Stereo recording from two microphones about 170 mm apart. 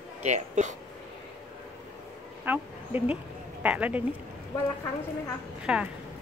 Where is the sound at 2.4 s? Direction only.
10° right (ahead or behind).